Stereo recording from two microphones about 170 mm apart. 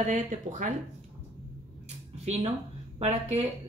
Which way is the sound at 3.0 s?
40° right (ahead or behind).